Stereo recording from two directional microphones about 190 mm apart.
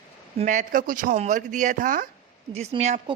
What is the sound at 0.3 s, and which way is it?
A woman's voice, 40° right (ahead or behind).